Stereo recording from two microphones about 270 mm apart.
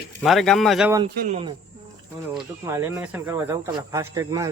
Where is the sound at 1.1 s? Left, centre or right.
Right.